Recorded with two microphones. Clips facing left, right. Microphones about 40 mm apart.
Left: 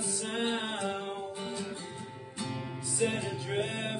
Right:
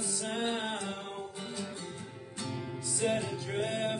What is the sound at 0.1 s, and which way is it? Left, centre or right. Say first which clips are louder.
Music: left 1 dB; left.